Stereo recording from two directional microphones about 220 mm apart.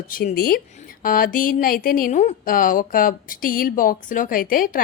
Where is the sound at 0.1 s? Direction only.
40° left (ahead or behind).